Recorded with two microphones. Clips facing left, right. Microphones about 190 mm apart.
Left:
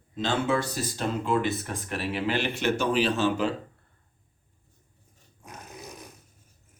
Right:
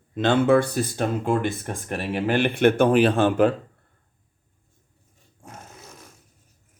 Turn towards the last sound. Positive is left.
turn(degrees=15)  # may be behind; listen again after turning